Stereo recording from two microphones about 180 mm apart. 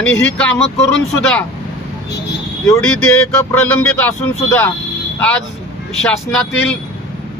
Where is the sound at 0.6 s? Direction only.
35° left (ahead or behind).